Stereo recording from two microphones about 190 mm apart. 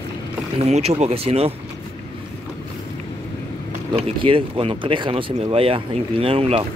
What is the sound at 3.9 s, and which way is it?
Speech, 30° right (ahead or behind).